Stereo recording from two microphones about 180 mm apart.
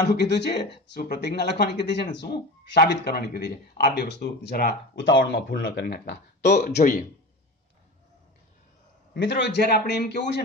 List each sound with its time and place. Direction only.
0.1 s speech: 70° left (ahead or behind)
6.8 s speech: 50° left (ahead or behind)
9.1 s speech: 70° left (ahead or behind)